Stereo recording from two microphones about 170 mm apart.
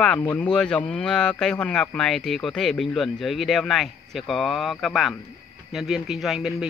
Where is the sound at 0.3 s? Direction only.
5° left (ahead or behind).